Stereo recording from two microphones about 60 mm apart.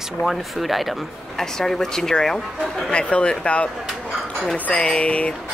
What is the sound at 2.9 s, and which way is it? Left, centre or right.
Speech, centre.